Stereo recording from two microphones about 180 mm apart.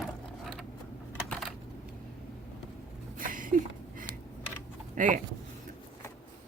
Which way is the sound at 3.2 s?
50° right (ahead or behind).